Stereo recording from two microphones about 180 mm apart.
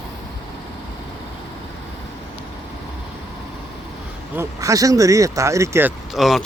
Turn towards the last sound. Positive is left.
turn(degrees=0)  # may be behind; listen again after turning